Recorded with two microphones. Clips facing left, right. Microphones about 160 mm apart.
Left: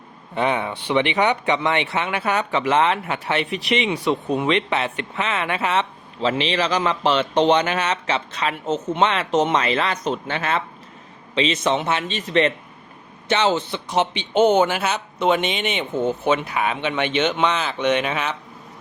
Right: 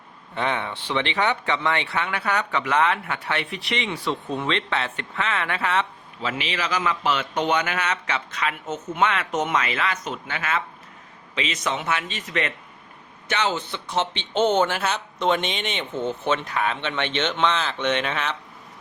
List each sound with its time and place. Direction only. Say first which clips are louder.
0.3 s speech: left 4 dB; 15° left (ahead or behind)
6.2 s a man's voice: left 7 dB; 30° left (ahead or behind); by 18.3 s 10° left (ahead or behind)